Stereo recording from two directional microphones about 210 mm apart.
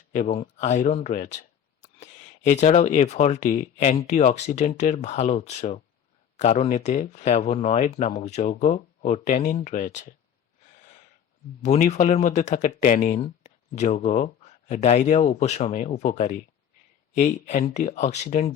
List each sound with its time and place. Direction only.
0.1 s speech: 30° left (ahead or behind)
11.6 s speech: 35° left (ahead or behind)